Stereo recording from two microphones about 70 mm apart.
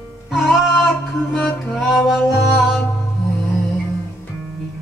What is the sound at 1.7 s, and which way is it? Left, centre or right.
Music, centre.